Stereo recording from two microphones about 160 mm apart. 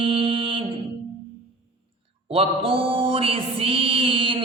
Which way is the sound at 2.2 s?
35° right (ahead or behind).